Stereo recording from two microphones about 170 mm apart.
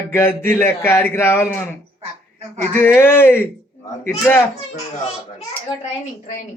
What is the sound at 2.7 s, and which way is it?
Speech, 15° left (ahead or behind).